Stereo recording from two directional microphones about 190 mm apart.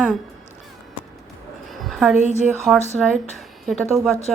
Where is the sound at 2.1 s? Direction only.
40° right (ahead or behind).